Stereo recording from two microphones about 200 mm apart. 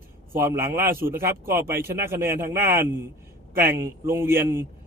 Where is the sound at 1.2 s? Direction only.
45° right (ahead or behind).